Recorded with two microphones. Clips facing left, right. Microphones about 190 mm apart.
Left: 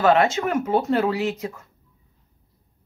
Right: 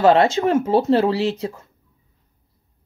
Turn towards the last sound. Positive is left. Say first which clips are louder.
# right 3 dB
turn(degrees=-30)  # may be behind; listen again after turning